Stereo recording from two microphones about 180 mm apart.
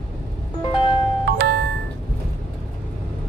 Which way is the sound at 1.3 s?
60° right (ahead or behind).